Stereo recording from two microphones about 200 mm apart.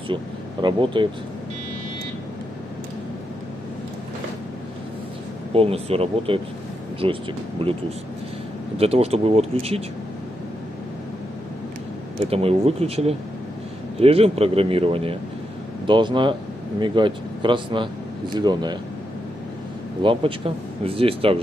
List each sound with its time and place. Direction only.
0.1 s speech: 25° right (ahead or behind)
5.5 s speech: 30° right (ahead or behind)
12.3 s speech: 30° right (ahead or behind)
20.0 s speech: 25° right (ahead or behind)